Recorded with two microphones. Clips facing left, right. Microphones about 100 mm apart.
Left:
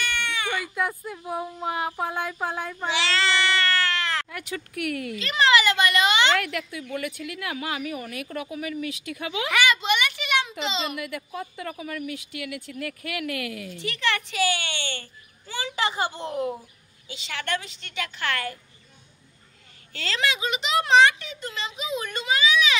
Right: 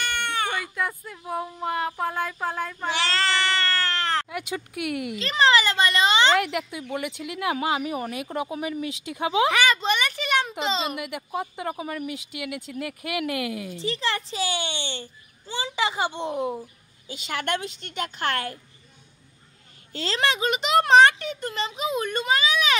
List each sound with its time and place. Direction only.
0.1 s baby cry: 50° right (ahead or behind)
0.7 s speech: 10° left (ahead or behind)
2.9 s cat: 40° right (ahead or behind)
4.3 s speech: 15° right (ahead or behind)
5.2 s a child's voice: 30° right (ahead or behind)
6.4 s a woman's voice: 20° right (ahead or behind); by 11.0 s 40° right (ahead or behind)
11.0 s a woman's voice: 20° right (ahead or behind)
17.1 s speech: 45° right (ahead or behind)
19.9 s speech: 35° right (ahead or behind)